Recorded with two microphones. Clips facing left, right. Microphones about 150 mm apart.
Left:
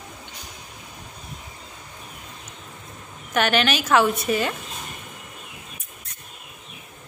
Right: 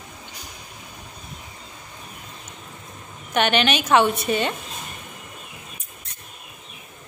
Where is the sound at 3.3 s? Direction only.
20° right (ahead or behind).